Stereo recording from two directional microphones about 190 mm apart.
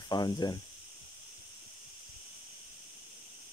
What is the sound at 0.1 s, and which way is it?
Speech, 20° left (ahead or behind).